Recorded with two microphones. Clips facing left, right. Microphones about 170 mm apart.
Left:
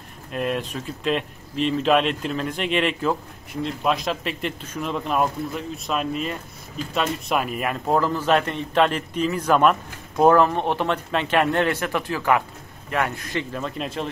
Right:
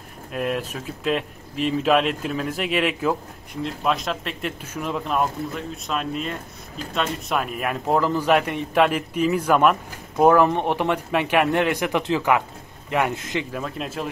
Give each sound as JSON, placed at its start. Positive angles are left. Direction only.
{"t": 0.3, "sound": "a man's voice", "side_deg": 0}
{"t": 13.5, "sound": "speech", "side_deg": -5}